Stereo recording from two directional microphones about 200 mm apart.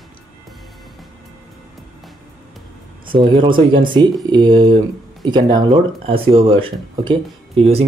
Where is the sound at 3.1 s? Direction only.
25° right (ahead or behind).